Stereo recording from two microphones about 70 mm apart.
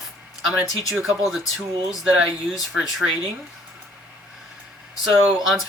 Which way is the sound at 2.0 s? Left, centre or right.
Centre.